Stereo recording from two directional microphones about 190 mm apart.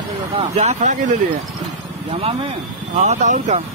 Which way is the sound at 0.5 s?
35° right (ahead or behind).